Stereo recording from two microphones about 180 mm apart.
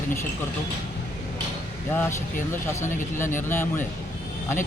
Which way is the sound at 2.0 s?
15° left (ahead or behind).